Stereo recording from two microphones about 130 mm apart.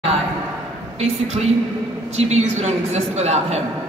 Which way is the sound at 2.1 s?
55° right (ahead or behind).